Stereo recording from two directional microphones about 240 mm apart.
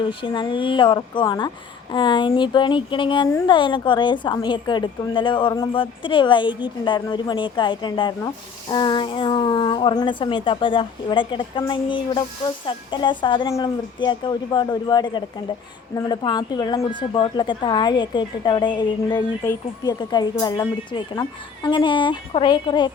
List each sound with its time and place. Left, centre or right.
0.0 s a woman's voice: left